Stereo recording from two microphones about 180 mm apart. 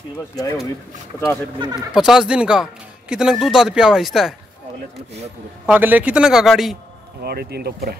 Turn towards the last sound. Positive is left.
turn(degrees=-60)  # may be behind; listen again after turning